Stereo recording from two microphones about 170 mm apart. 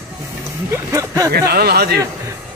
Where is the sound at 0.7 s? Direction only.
20° right (ahead or behind).